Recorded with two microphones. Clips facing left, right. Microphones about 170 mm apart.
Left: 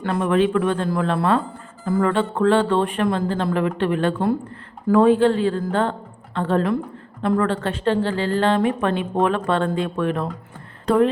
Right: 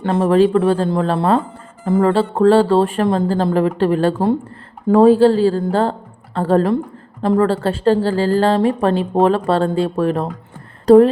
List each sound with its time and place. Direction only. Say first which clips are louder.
0.0 s a woman's voice: right 6 dB; 30° right (ahead or behind)